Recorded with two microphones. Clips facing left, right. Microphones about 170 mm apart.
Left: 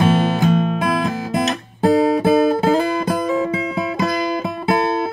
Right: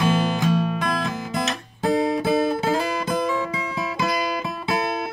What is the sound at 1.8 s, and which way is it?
Guitar, 55° left (ahead or behind).